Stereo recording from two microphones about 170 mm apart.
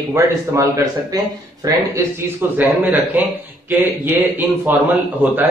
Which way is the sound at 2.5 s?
10° right (ahead or behind).